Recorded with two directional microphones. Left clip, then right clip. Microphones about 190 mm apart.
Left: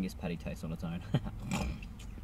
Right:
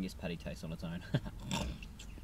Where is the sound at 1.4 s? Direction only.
20° right (ahead or behind).